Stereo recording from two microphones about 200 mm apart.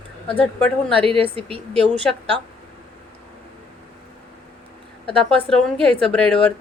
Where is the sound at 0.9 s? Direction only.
25° right (ahead or behind).